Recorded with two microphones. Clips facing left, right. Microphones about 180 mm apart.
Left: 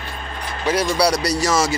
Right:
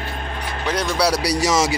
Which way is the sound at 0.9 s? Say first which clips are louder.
Left 1 dB; 5° right (ahead or behind).